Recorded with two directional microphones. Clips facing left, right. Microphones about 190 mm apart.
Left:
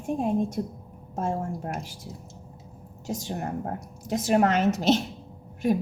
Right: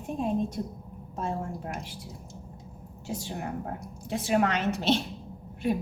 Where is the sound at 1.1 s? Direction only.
45° left (ahead or behind).